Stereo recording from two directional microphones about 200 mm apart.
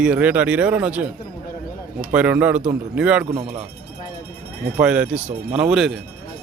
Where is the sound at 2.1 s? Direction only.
5° right (ahead or behind).